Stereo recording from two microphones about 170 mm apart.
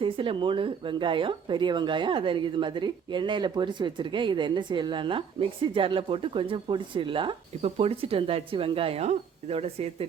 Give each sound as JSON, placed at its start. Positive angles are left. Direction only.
{"t": 0.0, "sound": "speech", "side_deg": -30}